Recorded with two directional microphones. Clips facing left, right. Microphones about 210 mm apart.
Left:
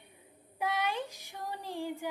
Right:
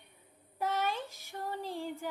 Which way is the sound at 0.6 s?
15° left (ahead or behind).